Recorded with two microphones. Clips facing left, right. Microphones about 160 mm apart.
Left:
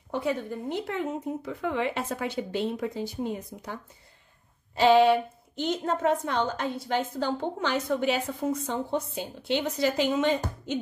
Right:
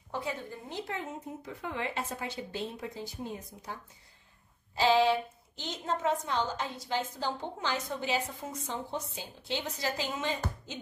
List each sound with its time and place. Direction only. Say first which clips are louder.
0.1 s speech: left 8 dB; 60° left (ahead or behind)
4.7 s a woman's voice: left 6 dB; 60° left (ahead or behind)